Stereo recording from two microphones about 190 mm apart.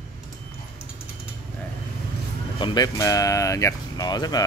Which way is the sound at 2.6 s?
20° left (ahead or behind).